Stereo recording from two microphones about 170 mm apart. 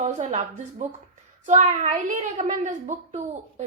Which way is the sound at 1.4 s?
45° right (ahead or behind).